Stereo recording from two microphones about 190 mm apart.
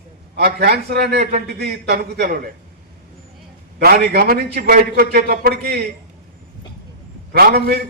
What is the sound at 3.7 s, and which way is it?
A man's voice, 55° right (ahead or behind).